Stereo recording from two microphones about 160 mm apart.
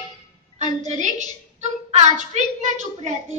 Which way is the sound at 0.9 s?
50° right (ahead or behind).